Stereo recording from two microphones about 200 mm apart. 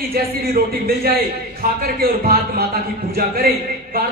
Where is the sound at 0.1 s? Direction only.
50° right (ahead or behind).